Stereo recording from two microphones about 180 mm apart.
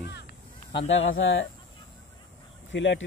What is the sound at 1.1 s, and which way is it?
Speech, 90° left.